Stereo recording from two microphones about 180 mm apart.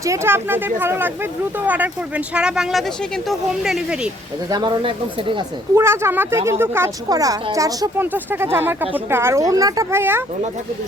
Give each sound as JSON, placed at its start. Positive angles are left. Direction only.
{"t": 0.0, "sound": "speech", "side_deg": -15}
{"t": 4.4, "sound": "speech", "side_deg": -25}
{"t": 5.7, "sound": "speech", "side_deg": -15}